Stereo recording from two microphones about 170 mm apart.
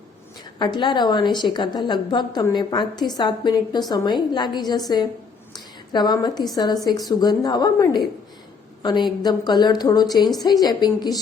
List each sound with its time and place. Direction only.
0.6 s a woman's voice: 25° left (ahead or behind)